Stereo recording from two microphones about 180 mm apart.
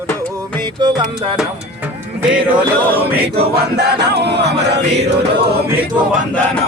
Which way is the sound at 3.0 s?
35° right (ahead or behind).